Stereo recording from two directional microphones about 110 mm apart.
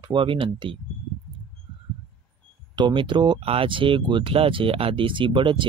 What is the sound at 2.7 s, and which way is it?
Speech, 45° right (ahead or behind).